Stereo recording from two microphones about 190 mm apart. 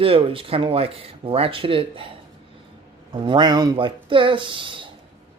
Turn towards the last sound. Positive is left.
turn(degrees=-25)  # may be behind; listen again after turning